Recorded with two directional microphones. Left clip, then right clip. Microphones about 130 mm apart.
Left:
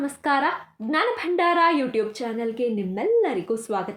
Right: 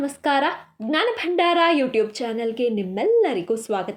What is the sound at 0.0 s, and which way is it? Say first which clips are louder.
A woman's voice: right 2 dB; 30° right (ahead or behind).